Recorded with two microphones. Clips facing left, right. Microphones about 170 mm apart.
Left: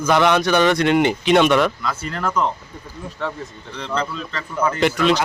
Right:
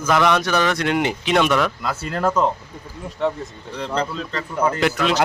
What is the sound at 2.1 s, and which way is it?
Speech, 40° right (ahead or behind).